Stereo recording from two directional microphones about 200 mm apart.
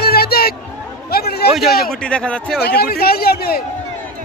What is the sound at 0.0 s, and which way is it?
Hubbub, 50° left (ahead or behind).